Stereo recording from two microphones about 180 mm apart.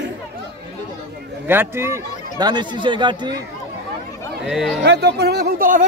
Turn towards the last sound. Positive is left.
turn(degrees=-50)  # may be behind; listen again after turning